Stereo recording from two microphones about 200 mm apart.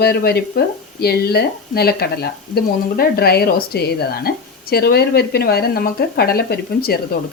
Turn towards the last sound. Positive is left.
turn(degrees=50)  # may be behind; listen again after turning